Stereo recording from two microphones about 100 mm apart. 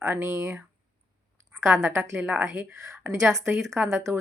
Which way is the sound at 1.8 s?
25° right (ahead or behind).